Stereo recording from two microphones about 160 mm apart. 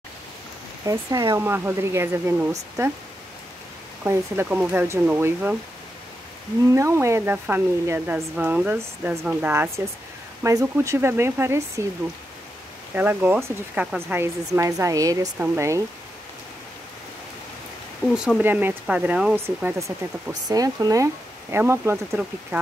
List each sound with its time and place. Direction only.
0.8 s speech: 20° right (ahead or behind)
4.0 s speech: 15° right (ahead or behind)
6.7 s speech: 20° right (ahead or behind)
12.9 s speech: 10° right (ahead or behind)
18.1 s speech: 5° right (ahead or behind)